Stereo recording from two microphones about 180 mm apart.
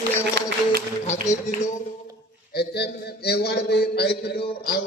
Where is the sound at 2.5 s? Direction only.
65° left (ahead or behind).